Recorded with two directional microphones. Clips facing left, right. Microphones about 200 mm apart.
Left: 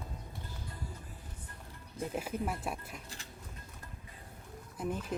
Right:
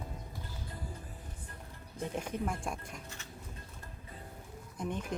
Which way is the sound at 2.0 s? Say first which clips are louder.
Even; 5° left (ahead or behind).